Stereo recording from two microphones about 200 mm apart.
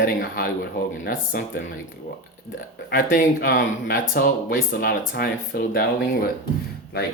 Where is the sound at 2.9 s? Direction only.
45° left (ahead or behind).